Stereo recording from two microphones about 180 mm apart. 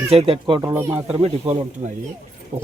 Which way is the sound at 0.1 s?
30° right (ahead or behind).